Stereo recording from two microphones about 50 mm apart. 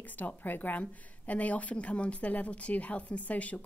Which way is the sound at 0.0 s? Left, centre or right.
Left.